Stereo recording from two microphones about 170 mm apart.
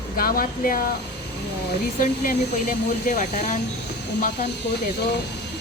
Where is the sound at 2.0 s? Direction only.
55° left (ahead or behind).